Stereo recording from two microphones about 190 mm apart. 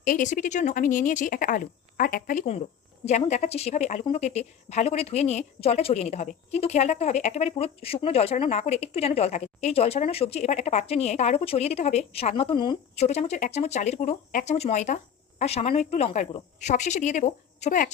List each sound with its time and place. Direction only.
0.0 s speech: 45° left (ahead or behind)
3.1 s a woman's voice: 35° left (ahead or behind)